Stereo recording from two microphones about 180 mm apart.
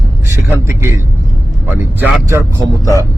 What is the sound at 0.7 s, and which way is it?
A man's voice, 15° right (ahead or behind).